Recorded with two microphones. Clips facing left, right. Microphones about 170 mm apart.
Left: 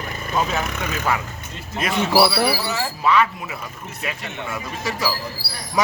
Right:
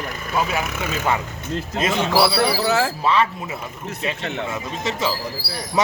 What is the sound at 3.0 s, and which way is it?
A man's voice, 30° right (ahead or behind).